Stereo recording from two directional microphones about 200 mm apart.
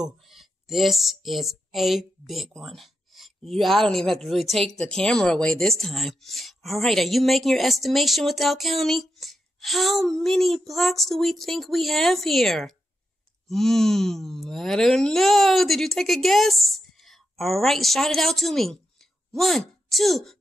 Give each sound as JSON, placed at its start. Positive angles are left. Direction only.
{"t": 0.0, "sound": "speech", "side_deg": 0}